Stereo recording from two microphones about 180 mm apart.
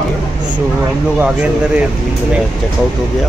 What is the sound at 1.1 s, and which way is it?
Speech, 5° right (ahead or behind).